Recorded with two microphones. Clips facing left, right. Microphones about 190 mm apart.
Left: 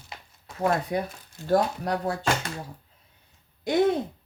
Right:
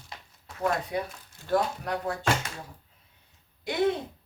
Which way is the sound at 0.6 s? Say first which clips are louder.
Left 3 dB; 40° left (ahead or behind).